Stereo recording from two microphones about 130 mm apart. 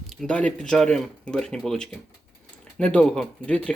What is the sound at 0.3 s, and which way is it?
Speech, 10° left (ahead or behind).